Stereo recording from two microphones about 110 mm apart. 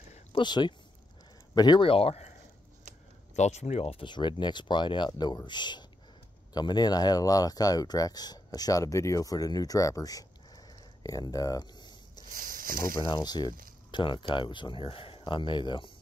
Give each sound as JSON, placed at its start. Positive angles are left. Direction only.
{"t": 0.4, "sound": "speech", "side_deg": 45}
{"t": 1.9, "sound": "speech", "side_deg": 65}
{"t": 3.3, "sound": "speech", "side_deg": 90}
{"t": 4.0, "sound": "speech", "side_deg": 45}